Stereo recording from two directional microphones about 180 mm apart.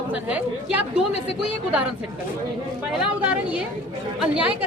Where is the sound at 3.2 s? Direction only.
5° right (ahead or behind).